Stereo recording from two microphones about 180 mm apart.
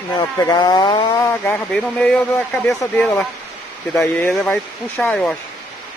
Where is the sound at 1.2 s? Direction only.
10° left (ahead or behind).